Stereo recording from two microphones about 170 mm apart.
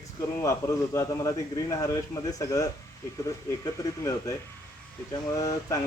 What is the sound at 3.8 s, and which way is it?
Speech, 20° left (ahead or behind).